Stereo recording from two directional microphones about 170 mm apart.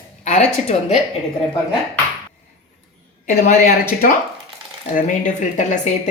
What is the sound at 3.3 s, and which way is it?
A woman's voice, 50° left (ahead or behind).